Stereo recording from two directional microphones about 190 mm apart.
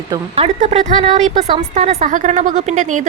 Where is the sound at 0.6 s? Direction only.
40° right (ahead or behind).